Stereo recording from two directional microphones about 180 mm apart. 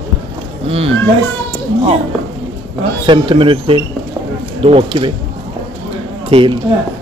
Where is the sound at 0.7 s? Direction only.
30° right (ahead or behind).